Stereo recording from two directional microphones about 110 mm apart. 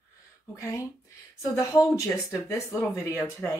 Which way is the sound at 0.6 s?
25° left (ahead or behind).